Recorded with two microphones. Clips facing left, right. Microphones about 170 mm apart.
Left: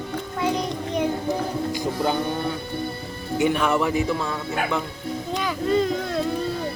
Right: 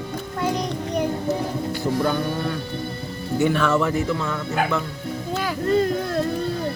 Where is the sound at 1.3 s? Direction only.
15° left (ahead or behind).